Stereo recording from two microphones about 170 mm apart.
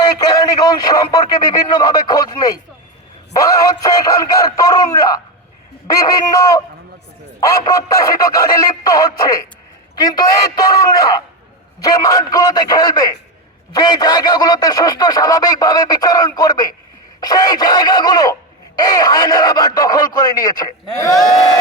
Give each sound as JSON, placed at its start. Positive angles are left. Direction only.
{"t": 0.0, "sound": "speech", "side_deg": 25}